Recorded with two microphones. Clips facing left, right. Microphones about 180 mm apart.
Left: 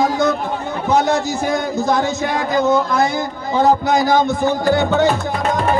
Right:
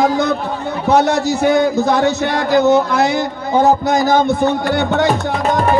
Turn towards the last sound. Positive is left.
turn(degrees=-65)  # may be behind; listen again after turning